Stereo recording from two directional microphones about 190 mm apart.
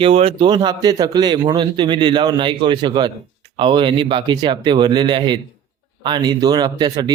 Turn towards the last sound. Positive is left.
turn(degrees=-20)  # may be behind; listen again after turning